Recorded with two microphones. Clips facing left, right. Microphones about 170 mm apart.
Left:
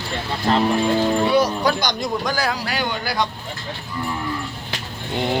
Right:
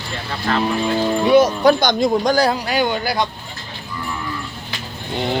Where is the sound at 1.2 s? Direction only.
20° right (ahead or behind).